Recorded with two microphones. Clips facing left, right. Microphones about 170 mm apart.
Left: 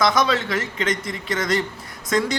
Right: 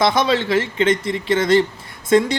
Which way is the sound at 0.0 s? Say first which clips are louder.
Right 3 dB; 30° right (ahead or behind).